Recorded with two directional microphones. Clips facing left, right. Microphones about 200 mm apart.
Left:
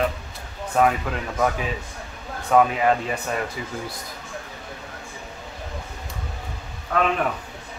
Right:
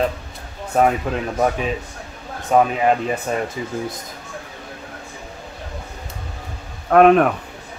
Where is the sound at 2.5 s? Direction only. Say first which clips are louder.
Right 2 dB; 25° right (ahead or behind).